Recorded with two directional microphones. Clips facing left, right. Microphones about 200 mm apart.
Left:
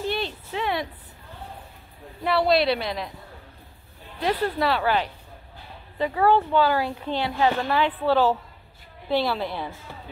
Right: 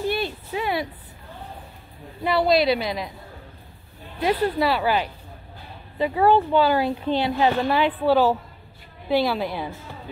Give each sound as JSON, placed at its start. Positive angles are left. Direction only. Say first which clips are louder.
{"t": 0.1, "sound": "a sound", "louder": "right 2 dB", "side_deg": -10}
{"t": 2.2, "sound": "a woman's voice", "louder": "right 2 dB", "side_deg": 0}
{"t": 4.2, "sound": "a woman's voice", "louder": "right 3 dB", "side_deg": -5}
{"t": 5.9, "sound": "a woman's voice", "louder": "right 2 dB", "side_deg": -20}